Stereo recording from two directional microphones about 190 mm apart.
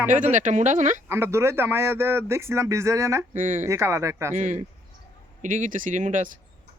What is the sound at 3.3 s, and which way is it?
Speech, 40° right (ahead or behind).